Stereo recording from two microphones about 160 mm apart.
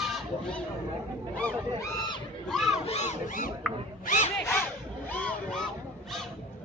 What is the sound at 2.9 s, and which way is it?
Speech, 45° left (ahead or behind).